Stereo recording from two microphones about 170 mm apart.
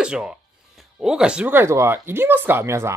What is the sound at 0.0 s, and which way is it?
Speech, 5° right (ahead or behind).